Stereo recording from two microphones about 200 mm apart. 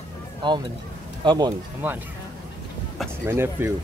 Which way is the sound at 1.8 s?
10° right (ahead or behind).